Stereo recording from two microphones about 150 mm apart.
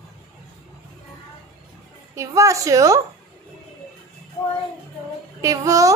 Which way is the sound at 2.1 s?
20° right (ahead or behind).